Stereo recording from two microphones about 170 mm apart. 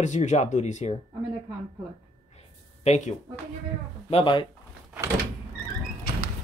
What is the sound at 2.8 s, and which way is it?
Speech, 40° left (ahead or behind).